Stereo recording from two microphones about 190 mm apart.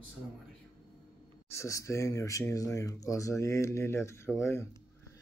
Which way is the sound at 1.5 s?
15° left (ahead or behind).